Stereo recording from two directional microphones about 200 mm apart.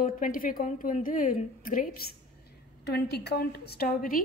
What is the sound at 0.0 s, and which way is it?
A woman's voice, 45° left (ahead or behind).